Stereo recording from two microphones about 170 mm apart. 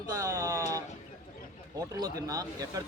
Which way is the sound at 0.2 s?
15° right (ahead or behind).